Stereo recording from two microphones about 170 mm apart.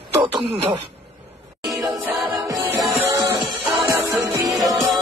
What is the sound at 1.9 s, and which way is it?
Music, centre (ahead or behind).